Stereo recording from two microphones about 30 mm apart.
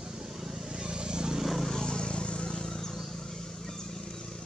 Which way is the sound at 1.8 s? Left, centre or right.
Left.